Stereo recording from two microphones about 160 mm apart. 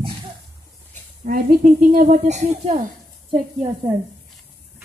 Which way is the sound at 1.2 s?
65° right (ahead or behind).